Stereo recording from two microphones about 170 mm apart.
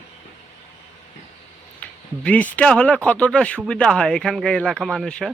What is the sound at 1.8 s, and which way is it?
Speech, 10° left (ahead or behind).